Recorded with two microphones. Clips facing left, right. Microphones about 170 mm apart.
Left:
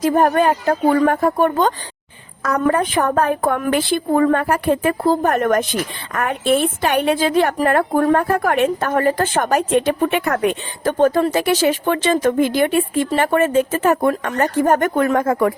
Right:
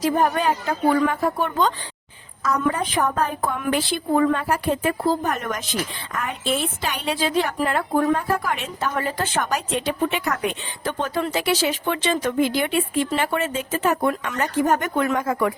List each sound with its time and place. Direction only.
0.0 s a woman's voice: 50° left (ahead or behind)
2.4 s a woman's voice: 60° left (ahead or behind)